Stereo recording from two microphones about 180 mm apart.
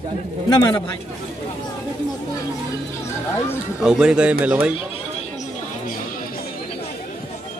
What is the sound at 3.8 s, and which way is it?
Speech, 5° right (ahead or behind).